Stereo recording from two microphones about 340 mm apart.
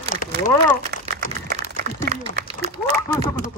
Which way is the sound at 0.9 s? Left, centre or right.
Right.